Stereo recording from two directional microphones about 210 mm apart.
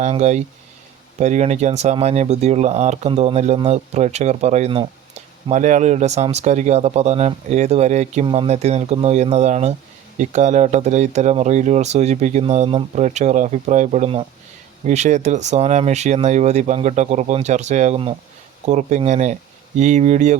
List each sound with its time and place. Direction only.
0.0 s speech: 35° right (ahead or behind)